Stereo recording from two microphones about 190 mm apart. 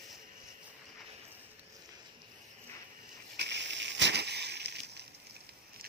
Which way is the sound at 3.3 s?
65° right (ahead or behind).